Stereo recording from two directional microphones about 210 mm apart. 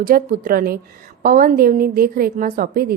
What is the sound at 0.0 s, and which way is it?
A woman's voice, 45° right (ahead or behind).